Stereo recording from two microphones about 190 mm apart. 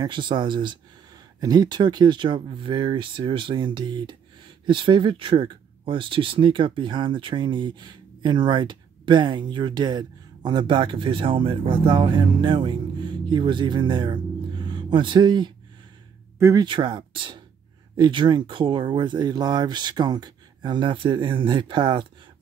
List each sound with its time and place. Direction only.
0.0 s speech: 25° right (ahead or behind)
16.6 s speech: 25° right (ahead or behind)